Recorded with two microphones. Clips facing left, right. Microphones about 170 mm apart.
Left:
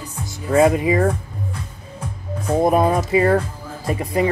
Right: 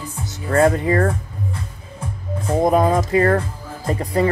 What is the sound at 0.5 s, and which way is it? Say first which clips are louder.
Speech: left 1 dB; 10° left (ahead or behind).